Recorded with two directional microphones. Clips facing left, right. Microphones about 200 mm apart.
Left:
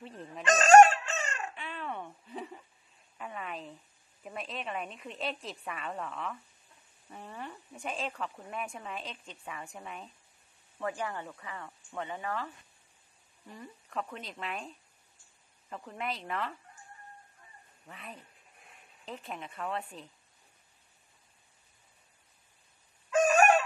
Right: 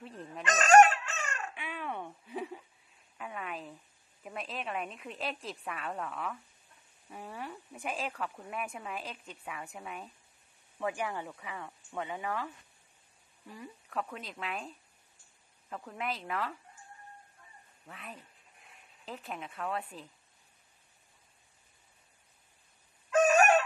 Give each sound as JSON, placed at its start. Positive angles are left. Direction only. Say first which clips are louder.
{"t": 0.0, "sound": "a woman's voice", "louder": "even", "side_deg": 0}
{"t": 0.4, "sound": "chicken", "louder": "left 3 dB", "side_deg": 30}
{"t": 1.5, "sound": "giggle", "louder": "even", "side_deg": -10}
{"t": 3.2, "sound": "a woman's voice", "louder": "even", "side_deg": 0}
{"t": 10.8, "sound": "speech", "louder": "right 1 dB", "side_deg": -15}
{"t": 13.8, "sound": "a woman's voice", "louder": "even", "side_deg": 0}
{"t": 15.7, "sound": "a woman's voice", "louder": "even", "side_deg": 0}
{"t": 17.8, "sound": "a woman's voice", "louder": "even", "side_deg": 0}